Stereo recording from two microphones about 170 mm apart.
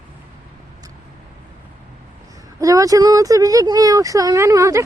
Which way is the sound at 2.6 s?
20° right (ahead or behind).